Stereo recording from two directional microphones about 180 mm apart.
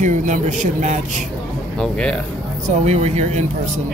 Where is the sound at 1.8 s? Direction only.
5° left (ahead or behind).